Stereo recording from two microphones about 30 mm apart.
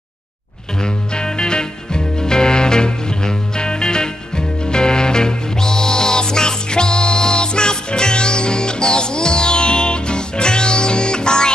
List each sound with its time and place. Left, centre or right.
0.8 s music: left